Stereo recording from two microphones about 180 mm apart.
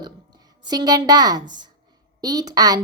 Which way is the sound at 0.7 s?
20° right (ahead or behind).